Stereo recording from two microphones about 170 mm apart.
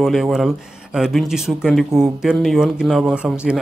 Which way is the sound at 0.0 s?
Centre (ahead or behind).